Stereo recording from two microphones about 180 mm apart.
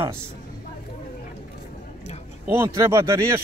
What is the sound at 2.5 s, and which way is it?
Speech, 15° right (ahead or behind).